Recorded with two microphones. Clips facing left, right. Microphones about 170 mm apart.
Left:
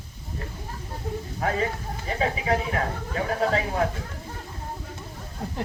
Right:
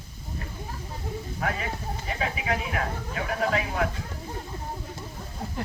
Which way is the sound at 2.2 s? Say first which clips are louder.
Left 5 dB; 35° left (ahead or behind).